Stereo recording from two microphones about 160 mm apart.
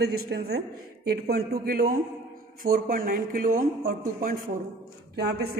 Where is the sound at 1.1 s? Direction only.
70° right (ahead or behind).